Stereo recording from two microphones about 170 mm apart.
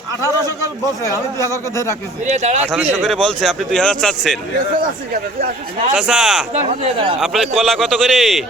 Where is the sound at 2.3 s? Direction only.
45° right (ahead or behind).